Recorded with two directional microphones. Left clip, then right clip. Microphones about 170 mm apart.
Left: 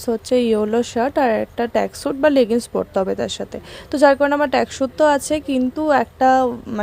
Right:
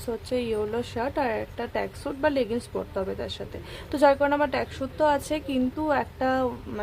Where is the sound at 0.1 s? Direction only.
40° left (ahead or behind).